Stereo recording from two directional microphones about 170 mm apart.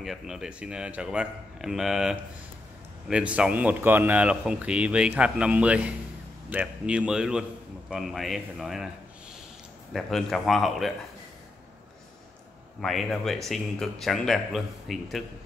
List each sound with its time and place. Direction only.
0.0 s a man's voice: centre (ahead or behind)
9.9 s a man's voice: centre (ahead or behind)
12.8 s a man's voice: centre (ahead or behind)